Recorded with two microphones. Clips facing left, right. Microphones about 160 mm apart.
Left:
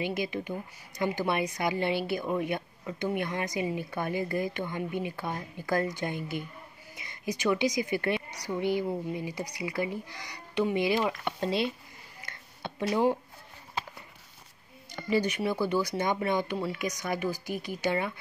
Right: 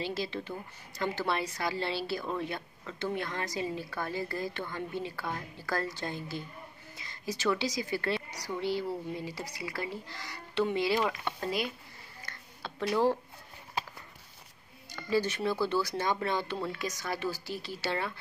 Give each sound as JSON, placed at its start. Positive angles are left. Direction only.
{"t": 0.0, "sound": "a woman's voice", "side_deg": 15}
{"t": 12.3, "sound": "a sound", "side_deg": 20}
{"t": 14.9, "sound": "a woman's voice", "side_deg": 20}